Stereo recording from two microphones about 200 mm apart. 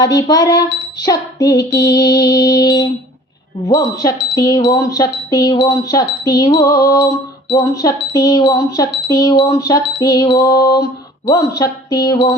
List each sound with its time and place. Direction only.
0.0 s female singing: 20° left (ahead or behind)
3.7 s speech: 20° left (ahead or behind)
11.3 s female singing: 20° left (ahead or behind)